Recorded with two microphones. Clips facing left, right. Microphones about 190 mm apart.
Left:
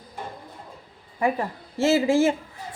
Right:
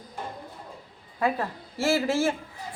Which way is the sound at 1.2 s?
15° left (ahead or behind).